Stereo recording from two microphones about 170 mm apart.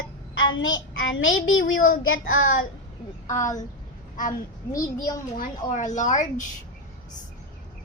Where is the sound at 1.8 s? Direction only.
55° left (ahead or behind).